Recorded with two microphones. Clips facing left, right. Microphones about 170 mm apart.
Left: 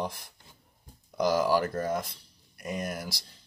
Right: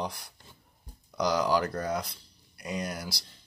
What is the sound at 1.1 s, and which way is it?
Speech, 50° left (ahead or behind).